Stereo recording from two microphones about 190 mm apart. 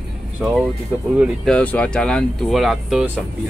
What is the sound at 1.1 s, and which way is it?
Speech, 5° right (ahead or behind).